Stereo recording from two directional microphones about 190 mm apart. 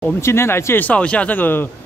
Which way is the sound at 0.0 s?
15° left (ahead or behind).